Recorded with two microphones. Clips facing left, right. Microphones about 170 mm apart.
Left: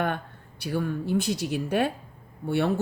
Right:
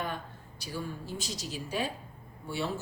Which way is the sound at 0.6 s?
60° left (ahead or behind).